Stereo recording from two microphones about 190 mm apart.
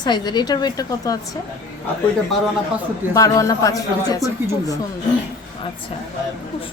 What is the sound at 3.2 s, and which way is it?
A woman's voice, 15° left (ahead or behind).